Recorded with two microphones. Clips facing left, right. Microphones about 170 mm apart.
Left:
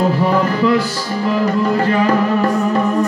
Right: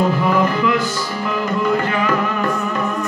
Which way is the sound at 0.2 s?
35° left (ahead or behind).